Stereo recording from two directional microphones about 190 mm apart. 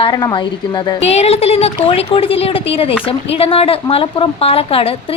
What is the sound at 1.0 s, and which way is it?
A woman's voice, 35° left (ahead or behind).